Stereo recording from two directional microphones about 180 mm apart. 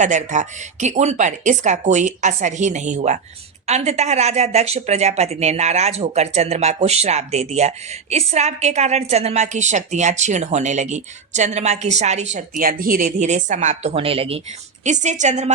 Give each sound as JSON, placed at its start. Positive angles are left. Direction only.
{"t": 0.0, "sound": "a woman's voice", "side_deg": -45}